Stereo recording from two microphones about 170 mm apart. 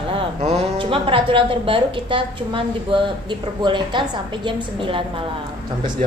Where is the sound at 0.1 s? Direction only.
35° right (ahead or behind).